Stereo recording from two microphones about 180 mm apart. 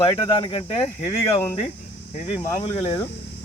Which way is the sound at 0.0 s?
30° left (ahead or behind).